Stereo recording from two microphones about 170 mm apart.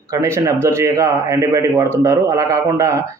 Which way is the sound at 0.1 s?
20° right (ahead or behind).